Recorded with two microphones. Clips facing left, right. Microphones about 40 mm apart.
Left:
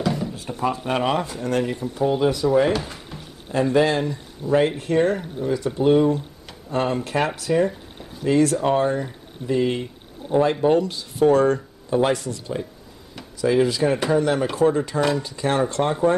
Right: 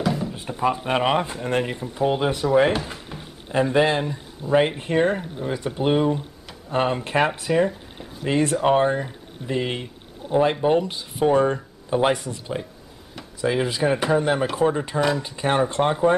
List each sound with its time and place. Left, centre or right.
0.0 s drawer open or close: centre
0.5 s speech: centre
2.9 s speech: centre
15.0 s speech: centre
15.2 s speech: right